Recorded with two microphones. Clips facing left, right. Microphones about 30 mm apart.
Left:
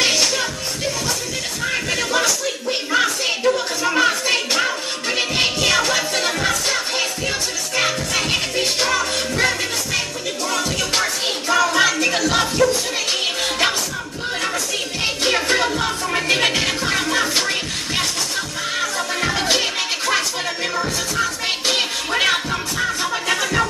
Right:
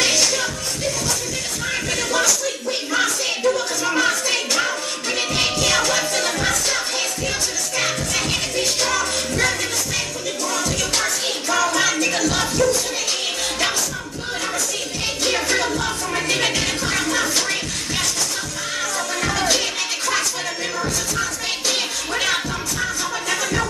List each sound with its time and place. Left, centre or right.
0.0 s music: left
1.6 s music: centre
2.9 s a sound: left
6.4 s music: left
15.0 s music: left